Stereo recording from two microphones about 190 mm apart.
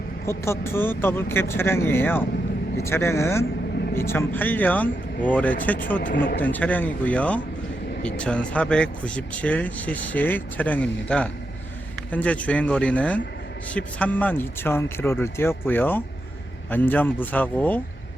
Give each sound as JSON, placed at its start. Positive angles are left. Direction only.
{"t": 0.3, "sound": "speech", "side_deg": 15}
{"t": 6.0, "sound": "speech", "side_deg": 45}
{"t": 6.4, "sound": "speech", "side_deg": 10}